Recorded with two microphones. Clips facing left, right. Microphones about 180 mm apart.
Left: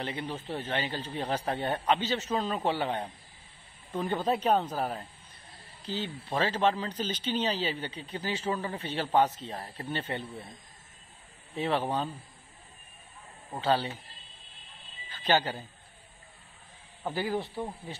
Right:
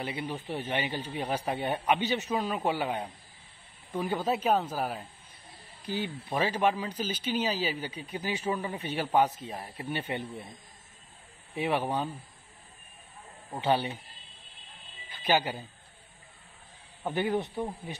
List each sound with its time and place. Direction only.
0.0 s speech: 10° right (ahead or behind)
11.5 s speech: 10° right (ahead or behind)
13.5 s speech: 15° right (ahead or behind)
15.0 s speech: 10° right (ahead or behind)
17.1 s speech: 20° right (ahead or behind)